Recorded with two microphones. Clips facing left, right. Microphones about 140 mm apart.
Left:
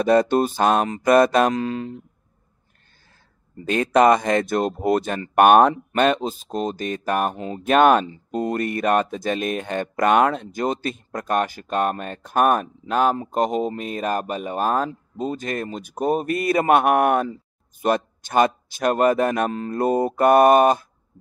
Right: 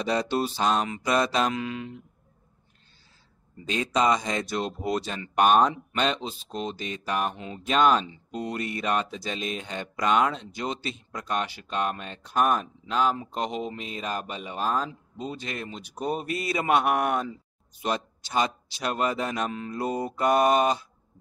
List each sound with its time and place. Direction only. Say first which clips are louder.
0.0 s speech: left 9 dB; 50° left (ahead or behind)
1.6 s speech: left 7 dB; 40° left (ahead or behind)
3.6 s speech: left 8 dB; 55° left (ahead or behind)
7.6 s speech: left 6 dB; 55° left (ahead or behind)